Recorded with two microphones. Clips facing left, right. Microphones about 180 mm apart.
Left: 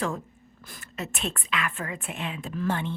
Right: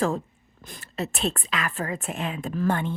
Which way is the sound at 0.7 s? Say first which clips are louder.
Right 5 dB; 35° right (ahead or behind).